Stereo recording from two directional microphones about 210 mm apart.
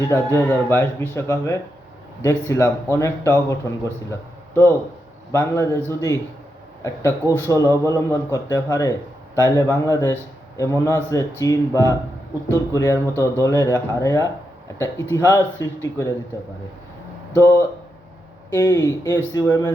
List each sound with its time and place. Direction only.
0.1 s a man's voice: 10° left (ahead or behind)
17.3 s a man's voice: 10° left (ahead or behind)